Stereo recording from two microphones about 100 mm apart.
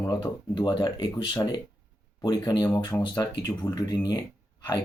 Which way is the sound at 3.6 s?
45° left (ahead or behind).